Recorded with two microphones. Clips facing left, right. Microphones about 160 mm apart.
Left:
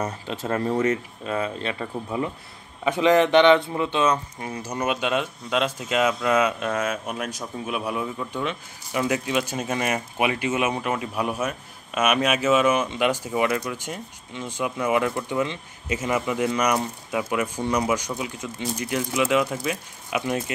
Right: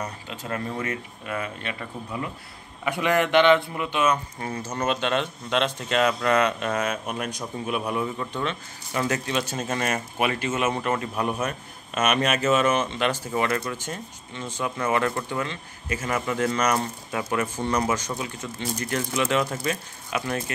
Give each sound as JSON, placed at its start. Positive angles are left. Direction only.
{"t": 0.0, "sound": "speech", "side_deg": 40}
{"t": 4.4, "sound": "speech", "side_deg": 15}